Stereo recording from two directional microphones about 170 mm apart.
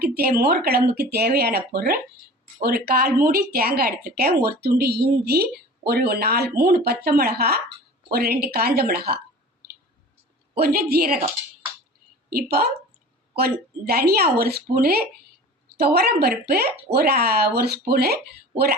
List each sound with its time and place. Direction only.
0.1 s a woman's voice: 65° right (ahead or behind)
10.5 s a woman's voice: 65° right (ahead or behind)
12.3 s a woman's voice: 60° right (ahead or behind)